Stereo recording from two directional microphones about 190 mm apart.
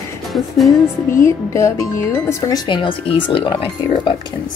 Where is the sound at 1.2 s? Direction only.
15° left (ahead or behind).